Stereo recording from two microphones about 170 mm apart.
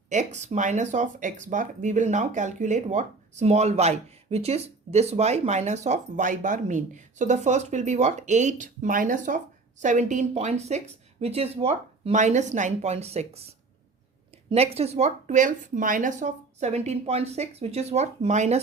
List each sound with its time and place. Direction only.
0.1 s a woman's voice: 45° right (ahead or behind)
14.5 s a woman's voice: 35° right (ahead or behind)